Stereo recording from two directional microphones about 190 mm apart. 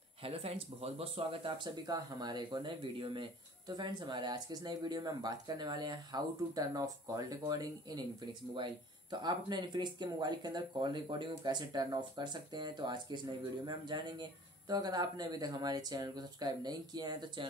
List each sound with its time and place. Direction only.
0.2 s speech: 30° right (ahead or behind)